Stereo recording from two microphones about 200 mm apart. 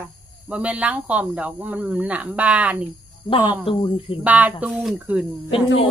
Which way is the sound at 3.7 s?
25° left (ahead or behind).